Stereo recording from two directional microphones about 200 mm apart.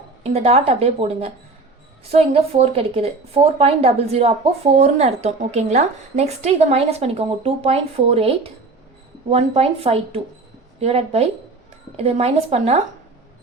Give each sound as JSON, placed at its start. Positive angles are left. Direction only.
{"t": 0.2, "sound": "speech", "side_deg": -30}